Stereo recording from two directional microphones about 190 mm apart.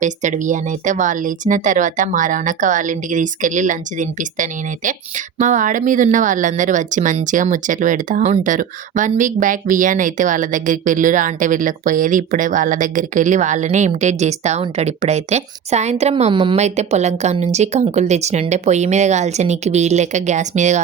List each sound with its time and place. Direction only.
0.0 s speech: 40° right (ahead or behind)